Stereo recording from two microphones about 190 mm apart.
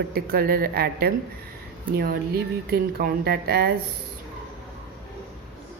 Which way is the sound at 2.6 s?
55° right (ahead or behind).